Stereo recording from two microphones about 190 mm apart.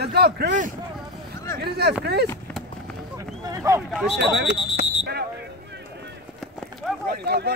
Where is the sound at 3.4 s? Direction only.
15° right (ahead or behind).